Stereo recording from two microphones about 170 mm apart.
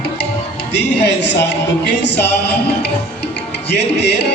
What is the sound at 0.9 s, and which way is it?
Speech, 85° left.